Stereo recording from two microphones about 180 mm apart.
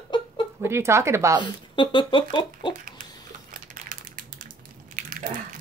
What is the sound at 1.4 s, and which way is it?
Speech, 25° left (ahead or behind).